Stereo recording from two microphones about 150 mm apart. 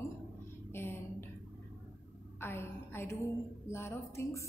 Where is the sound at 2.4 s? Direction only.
15° left (ahead or behind).